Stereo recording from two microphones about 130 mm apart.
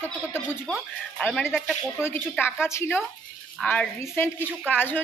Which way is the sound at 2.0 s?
20° left (ahead or behind).